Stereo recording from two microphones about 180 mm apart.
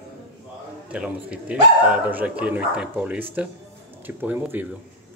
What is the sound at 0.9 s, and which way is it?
Speech, 5° right (ahead or behind).